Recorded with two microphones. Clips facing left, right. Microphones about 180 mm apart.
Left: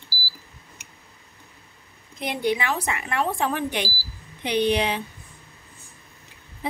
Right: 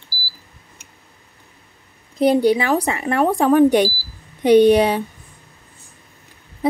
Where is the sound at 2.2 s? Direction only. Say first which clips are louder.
Right 10 dB; 35° right (ahead or behind).